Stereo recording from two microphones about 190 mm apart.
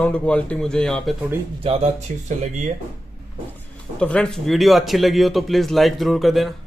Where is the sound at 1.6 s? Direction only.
30° right (ahead or behind).